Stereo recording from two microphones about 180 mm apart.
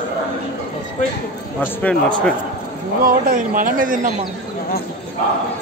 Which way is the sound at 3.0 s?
45° right (ahead or behind).